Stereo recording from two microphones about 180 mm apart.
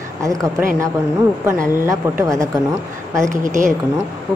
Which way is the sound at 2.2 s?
20° right (ahead or behind).